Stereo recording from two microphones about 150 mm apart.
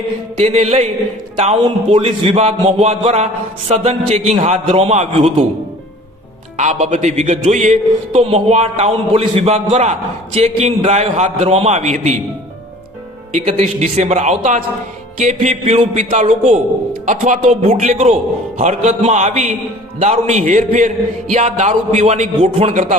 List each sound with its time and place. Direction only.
0.3 s a man's voice: 45° right (ahead or behind)
6.6 s a man's voice: 50° right (ahead or behind)
13.4 s a man's voice: 45° right (ahead or behind)